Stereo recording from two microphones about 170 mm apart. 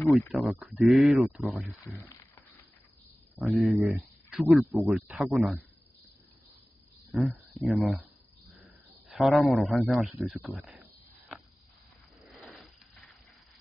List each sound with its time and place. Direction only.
0.3 s speech: centre (ahead or behind)
1.6 s speech: 15° left (ahead or behind)
3.3 s speech: centre (ahead or behind)
7.1 s speech: centre (ahead or behind)
9.1 s speech: centre (ahead or behind)
12.4 s a sound: 5° left (ahead or behind)